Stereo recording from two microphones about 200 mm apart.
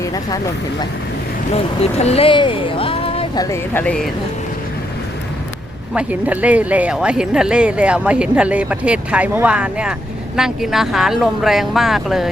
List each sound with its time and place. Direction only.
0.0 s speech: 20° left (ahead or behind)
1.5 s speech: 30° left (ahead or behind)
3.4 s speech: 10° left (ahead or behind)
5.9 s speech: 5° right (ahead or behind)